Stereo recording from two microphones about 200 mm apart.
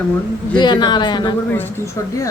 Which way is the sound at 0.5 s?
20° left (ahead or behind).